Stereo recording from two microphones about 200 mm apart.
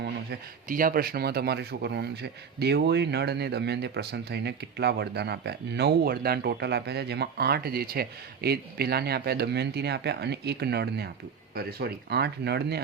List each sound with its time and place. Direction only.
0.0 s speech: 50° right (ahead or behind)